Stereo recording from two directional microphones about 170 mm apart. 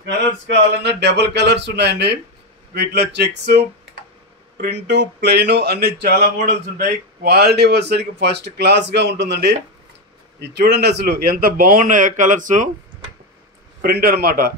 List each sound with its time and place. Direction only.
0.0 s speech: 85° right
10.4 s a man's voice: 75° right (ahead or behind); by 12.6 s 50° right (ahead or behind)
13.7 s a man's voice: 70° right (ahead or behind)